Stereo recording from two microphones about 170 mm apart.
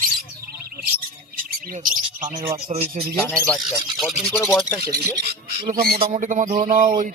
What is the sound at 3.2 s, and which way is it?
Speech, 10° left (ahead or behind).